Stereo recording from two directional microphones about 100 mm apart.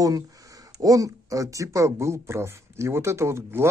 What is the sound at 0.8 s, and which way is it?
Speech, 35° right (ahead or behind).